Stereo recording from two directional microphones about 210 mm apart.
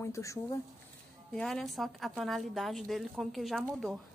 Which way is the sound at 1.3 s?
Centre (ahead or behind).